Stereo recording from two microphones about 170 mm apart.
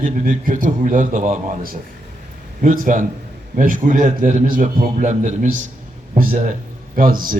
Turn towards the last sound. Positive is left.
turn(degrees=-55)  # may be behind; listen again after turning